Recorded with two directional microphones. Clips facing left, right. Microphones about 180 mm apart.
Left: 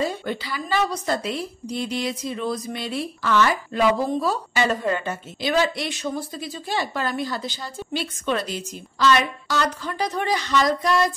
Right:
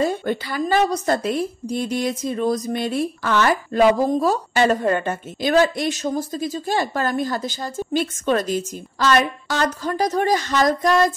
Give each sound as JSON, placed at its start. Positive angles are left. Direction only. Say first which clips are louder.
{"t": 0.0, "sound": "a woman's voice", "louder": "right 4 dB", "side_deg": -50}